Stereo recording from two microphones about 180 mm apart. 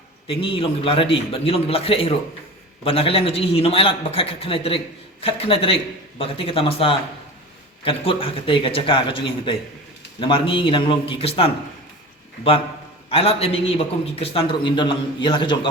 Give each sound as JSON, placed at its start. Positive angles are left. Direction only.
{"t": 0.3, "sound": "a man's voice", "side_deg": 30}
{"t": 13.1, "sound": "a man's voice", "side_deg": 30}